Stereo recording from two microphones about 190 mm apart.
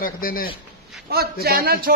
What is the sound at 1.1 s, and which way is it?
Speech, 55° right (ahead or behind).